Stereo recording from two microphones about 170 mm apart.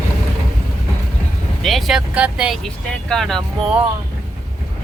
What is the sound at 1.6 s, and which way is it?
Speech, centre (ahead or behind).